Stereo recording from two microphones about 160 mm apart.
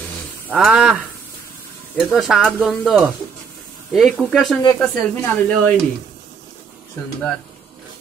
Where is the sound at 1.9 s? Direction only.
5° right (ahead or behind).